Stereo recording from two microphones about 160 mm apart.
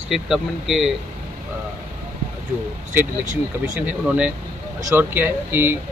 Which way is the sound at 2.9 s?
10° right (ahead or behind).